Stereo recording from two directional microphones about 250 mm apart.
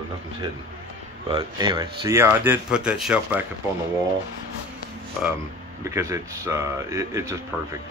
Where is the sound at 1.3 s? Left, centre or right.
Centre.